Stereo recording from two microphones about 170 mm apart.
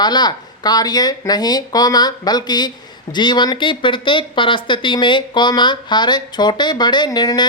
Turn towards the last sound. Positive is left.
turn(degrees=25)  # may be behind; listen again after turning